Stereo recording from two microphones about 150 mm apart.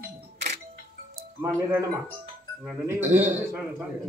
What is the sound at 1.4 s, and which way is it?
Speech, 20° right (ahead or behind).